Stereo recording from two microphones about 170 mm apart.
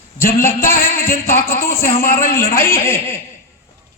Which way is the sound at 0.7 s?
55° left (ahead or behind).